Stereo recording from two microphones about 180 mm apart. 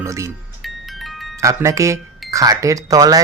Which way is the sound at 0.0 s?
15° right (ahead or behind).